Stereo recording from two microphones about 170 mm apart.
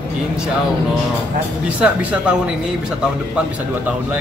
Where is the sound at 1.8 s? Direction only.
5° right (ahead or behind).